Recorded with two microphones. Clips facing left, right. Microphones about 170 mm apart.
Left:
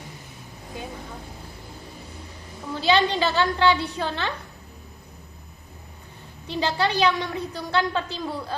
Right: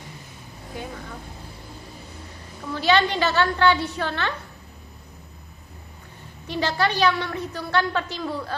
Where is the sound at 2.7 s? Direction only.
15° left (ahead or behind).